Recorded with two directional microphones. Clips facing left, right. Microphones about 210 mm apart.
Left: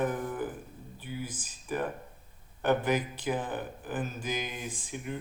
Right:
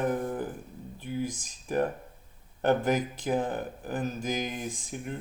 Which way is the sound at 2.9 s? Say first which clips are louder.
Right 2 dB; 40° right (ahead or behind).